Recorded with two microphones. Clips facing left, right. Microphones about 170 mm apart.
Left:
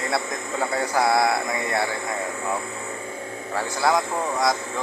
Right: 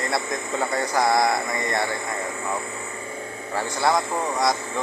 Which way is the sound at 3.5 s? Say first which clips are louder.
Even; centre (ahead or behind).